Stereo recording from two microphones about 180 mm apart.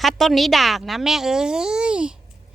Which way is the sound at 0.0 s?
Centre (ahead or behind).